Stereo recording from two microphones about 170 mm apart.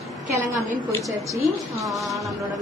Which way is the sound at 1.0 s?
Centre (ahead or behind).